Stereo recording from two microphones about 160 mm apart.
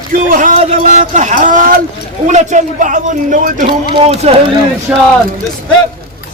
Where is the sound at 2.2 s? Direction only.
50° right (ahead or behind).